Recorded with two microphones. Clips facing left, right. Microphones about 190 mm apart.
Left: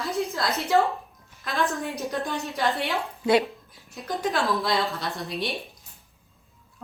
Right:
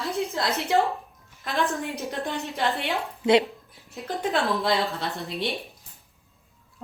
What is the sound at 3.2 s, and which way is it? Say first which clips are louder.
Speech: right 2 dB; 20° right (ahead or behind).